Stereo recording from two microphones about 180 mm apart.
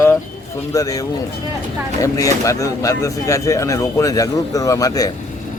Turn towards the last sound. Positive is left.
turn(degrees=20)  # may be behind; listen again after turning